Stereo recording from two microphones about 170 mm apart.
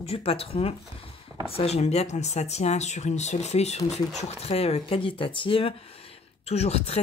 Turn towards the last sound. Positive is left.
turn(degrees=40)  # may be behind; listen again after turning